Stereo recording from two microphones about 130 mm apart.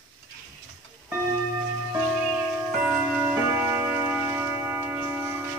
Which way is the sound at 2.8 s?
10° right (ahead or behind).